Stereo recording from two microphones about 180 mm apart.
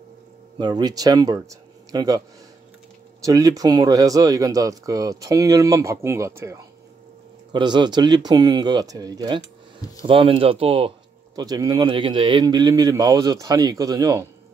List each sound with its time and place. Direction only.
0.6 s speech: 20° right (ahead or behind)
11.3 s speech: 20° right (ahead or behind)